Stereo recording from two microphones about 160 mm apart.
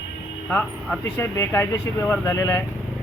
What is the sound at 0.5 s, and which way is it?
Speech, 15° left (ahead or behind).